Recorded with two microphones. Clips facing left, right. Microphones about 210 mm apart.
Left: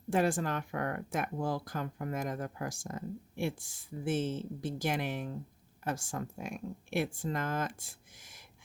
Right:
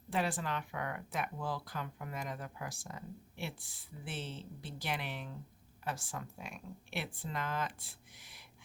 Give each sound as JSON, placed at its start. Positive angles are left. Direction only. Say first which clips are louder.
{"t": 0.1, "sound": "speech", "louder": "left 6 dB", "side_deg": 45}